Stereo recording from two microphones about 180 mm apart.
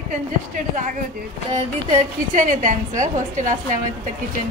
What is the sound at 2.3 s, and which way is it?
A woman's voice, 45° right (ahead or behind).